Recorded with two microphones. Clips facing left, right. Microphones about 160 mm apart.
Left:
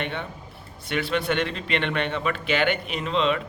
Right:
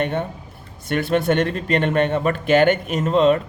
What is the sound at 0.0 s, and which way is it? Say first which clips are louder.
A man's voice: right 8 dB; 45° right (ahead or behind).